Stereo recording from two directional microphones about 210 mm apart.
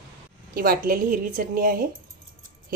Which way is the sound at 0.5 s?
45° right (ahead or behind).